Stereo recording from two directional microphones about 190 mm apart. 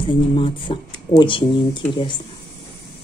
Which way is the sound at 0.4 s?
25° left (ahead or behind).